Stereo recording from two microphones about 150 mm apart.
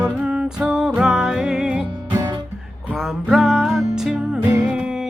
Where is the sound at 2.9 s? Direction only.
Centre (ahead or behind).